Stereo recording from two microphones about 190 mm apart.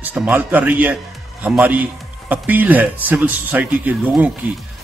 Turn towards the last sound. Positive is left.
turn(degrees=-10)  # may be behind; listen again after turning